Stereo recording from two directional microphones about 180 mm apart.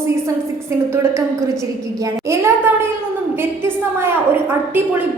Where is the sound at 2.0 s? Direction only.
15° right (ahead or behind).